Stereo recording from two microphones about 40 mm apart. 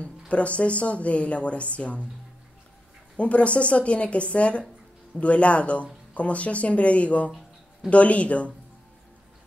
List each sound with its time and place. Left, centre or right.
0.0 s speech: left
3.2 s speech: left